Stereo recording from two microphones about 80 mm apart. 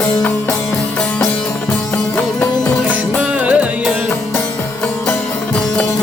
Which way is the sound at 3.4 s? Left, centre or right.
Centre.